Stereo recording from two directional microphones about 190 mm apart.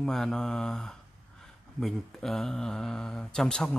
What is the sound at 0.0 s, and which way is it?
Speech, centre (ahead or behind).